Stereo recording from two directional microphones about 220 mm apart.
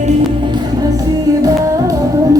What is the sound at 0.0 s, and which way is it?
Music, 20° right (ahead or behind).